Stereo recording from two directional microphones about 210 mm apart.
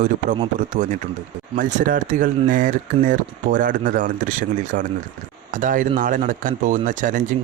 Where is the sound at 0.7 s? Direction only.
35° right (ahead or behind).